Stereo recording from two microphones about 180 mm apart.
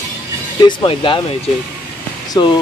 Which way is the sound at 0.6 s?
25° left (ahead or behind).